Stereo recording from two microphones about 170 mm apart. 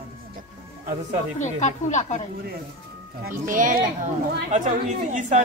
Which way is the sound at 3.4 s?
50° right (ahead or behind).